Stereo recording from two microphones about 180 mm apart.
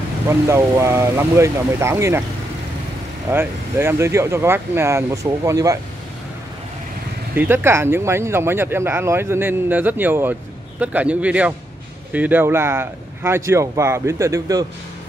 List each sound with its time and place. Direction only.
0.3 s speech: 15° right (ahead or behind)
3.3 s speech: 15° right (ahead or behind)
7.3 s speech: 10° right (ahead or behind)